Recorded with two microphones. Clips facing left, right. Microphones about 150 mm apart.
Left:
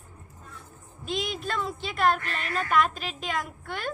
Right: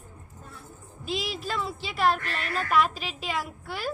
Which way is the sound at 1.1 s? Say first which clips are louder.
Left 1 dB; 5° right (ahead or behind).